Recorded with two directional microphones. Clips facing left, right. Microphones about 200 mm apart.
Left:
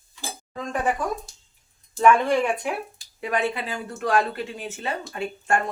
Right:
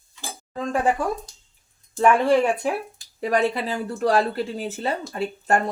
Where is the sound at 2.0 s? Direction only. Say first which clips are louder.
Right 1 dB; 35° right (ahead or behind).